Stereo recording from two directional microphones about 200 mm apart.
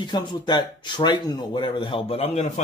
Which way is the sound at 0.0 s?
20° left (ahead or behind).